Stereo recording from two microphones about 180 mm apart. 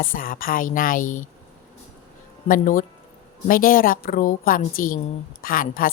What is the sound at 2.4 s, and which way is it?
A woman's voice, 50° left (ahead or behind).